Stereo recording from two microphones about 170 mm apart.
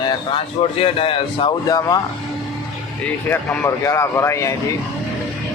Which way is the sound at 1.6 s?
20° left (ahead or behind).